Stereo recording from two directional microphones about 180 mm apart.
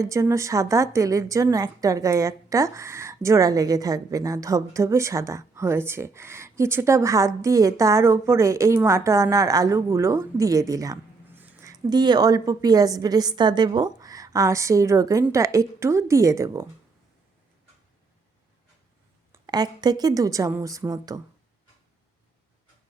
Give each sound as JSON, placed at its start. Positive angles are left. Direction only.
{"t": 0.0, "sound": "a woman's voice", "side_deg": -15}
{"t": 19.3, "sound": "speech", "side_deg": -20}